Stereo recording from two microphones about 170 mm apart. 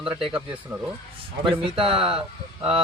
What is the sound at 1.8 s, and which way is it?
Speech, 30° right (ahead or behind).